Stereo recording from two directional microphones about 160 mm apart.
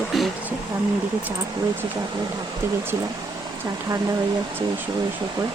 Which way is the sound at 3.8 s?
25° right (ahead or behind).